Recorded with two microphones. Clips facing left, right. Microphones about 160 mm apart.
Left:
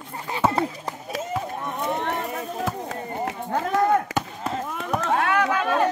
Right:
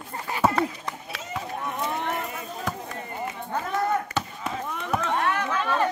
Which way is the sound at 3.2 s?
85° left.